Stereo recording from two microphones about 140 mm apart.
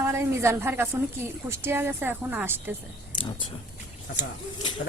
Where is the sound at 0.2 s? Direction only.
20° right (ahead or behind).